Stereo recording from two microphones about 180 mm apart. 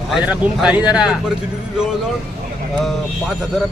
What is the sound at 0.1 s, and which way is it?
Speech, 5° right (ahead or behind).